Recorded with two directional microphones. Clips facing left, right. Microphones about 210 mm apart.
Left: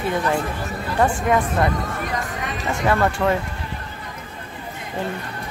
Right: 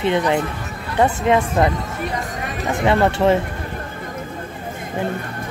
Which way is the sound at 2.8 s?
25° right (ahead or behind).